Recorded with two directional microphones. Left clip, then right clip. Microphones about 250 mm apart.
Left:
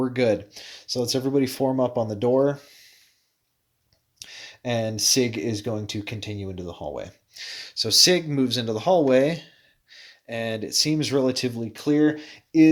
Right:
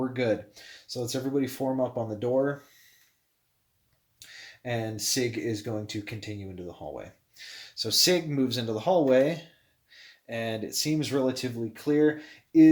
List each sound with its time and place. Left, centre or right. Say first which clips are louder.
0.0 s speech: left 6 dB; left
4.2 s speech: left 6 dB; left